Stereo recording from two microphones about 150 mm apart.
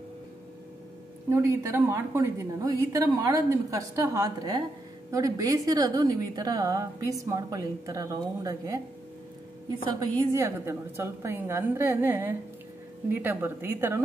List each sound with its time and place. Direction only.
1.3 s a woman's voice: 20° right (ahead or behind)
9.8 s a woman's voice: 25° right (ahead or behind)